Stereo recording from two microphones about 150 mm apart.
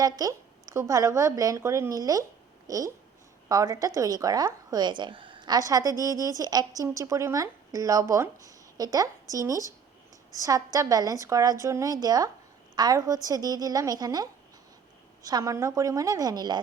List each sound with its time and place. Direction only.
0.0 s a woman's voice: 25° right (ahead or behind)